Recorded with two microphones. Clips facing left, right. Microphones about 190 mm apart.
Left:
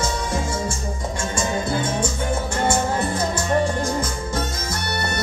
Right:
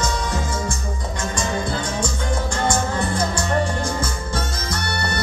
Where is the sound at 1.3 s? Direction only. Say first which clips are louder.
Left 1 dB; 25° left (ahead or behind).